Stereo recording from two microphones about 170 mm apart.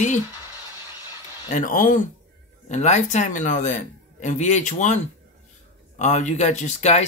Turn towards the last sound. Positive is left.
turn(degrees=45)  # may be behind; listen again after turning